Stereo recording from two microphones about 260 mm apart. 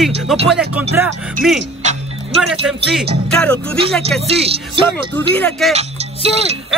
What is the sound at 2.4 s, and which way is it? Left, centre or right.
Speech, centre.